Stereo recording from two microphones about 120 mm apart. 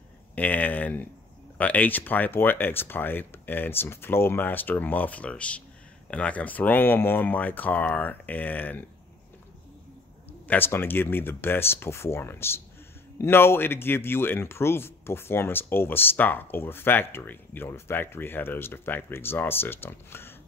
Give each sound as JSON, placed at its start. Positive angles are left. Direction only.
{"t": 0.4, "sound": "speech", "side_deg": 15}
{"t": 10.5, "sound": "speech", "side_deg": 15}